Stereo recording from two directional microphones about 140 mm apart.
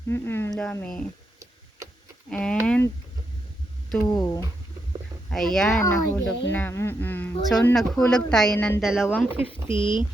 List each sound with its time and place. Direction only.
0.1 s speech: 20° left (ahead or behind)
2.3 s speech: 5° left (ahead or behind)
4.0 s speech: 25° left (ahead or behind)
5.3 s speech: centre (ahead or behind)
5.8 s speech: 20° left (ahead or behind)
7.7 s speech: centre (ahead or behind)
8.8 s speech: 5° right (ahead or behind)
9.3 s speech: 35° left (ahead or behind)